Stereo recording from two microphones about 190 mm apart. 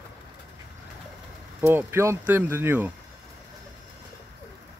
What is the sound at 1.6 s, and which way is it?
Speech, 10° right (ahead or behind).